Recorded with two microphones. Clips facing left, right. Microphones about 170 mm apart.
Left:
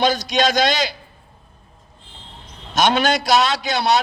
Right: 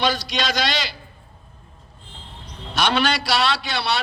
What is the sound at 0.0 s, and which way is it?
Speech, 45° left (ahead or behind).